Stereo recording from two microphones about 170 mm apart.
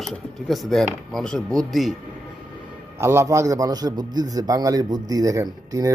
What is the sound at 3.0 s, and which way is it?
A man's voice, 15° right (ahead or behind).